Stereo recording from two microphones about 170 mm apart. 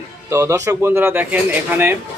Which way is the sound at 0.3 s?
15° right (ahead or behind).